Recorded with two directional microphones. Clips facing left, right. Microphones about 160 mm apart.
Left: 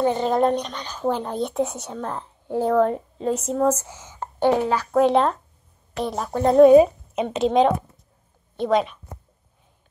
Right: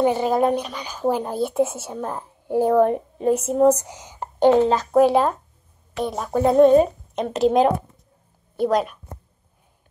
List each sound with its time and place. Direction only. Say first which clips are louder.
0.0 s speech: right 1 dB; 10° right (ahead or behind)
5.0 s a woman's voice: right 1 dB; 5° right (ahead or behind)
6.6 s a woman's voice: left 3 dB; 5° left (ahead or behind)